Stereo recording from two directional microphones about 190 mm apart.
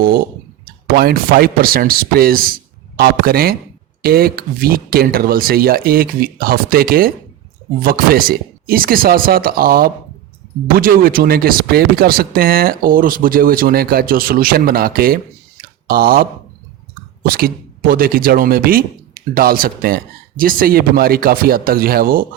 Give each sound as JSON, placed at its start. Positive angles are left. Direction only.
{"t": 0.0, "sound": "speech", "side_deg": -50}
{"t": 17.2, "sound": "speech", "side_deg": -50}